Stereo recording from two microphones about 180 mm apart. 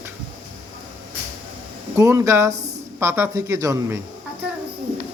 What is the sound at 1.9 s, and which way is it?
A man's voice, 15° right (ahead or behind).